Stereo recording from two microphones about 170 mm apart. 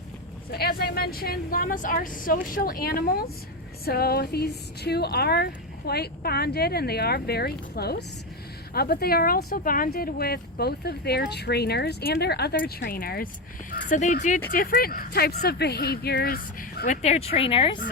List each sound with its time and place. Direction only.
0.5 s speech: 65° left (ahead or behind)
13.7 s speech: 50° left (ahead or behind); by 17.7 s 30° left (ahead or behind)